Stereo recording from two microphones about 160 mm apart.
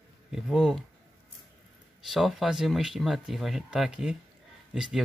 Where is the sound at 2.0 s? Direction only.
Centre (ahead or behind).